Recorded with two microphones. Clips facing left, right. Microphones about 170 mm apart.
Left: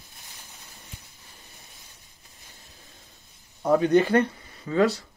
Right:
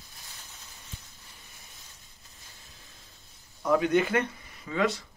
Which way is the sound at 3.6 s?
35° left (ahead or behind).